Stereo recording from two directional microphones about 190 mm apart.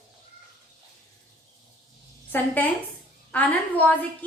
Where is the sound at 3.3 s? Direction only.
10° left (ahead or behind).